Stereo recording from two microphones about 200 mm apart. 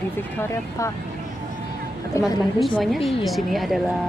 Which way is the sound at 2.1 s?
15° left (ahead or behind).